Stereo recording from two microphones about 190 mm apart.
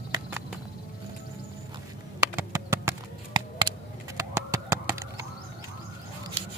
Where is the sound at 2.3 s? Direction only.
15° right (ahead or behind).